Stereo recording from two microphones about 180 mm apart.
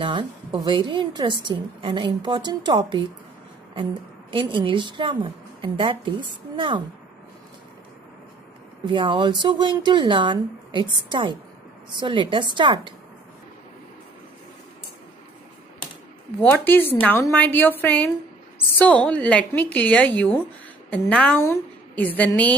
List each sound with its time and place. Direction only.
0.0 s a woman's voice: 25° right (ahead or behind)
4.3 s a woman's voice: 25° right (ahead or behind)
8.8 s a woman's voice: 25° right (ahead or behind)
16.3 s a woman's voice: 10° left (ahead or behind)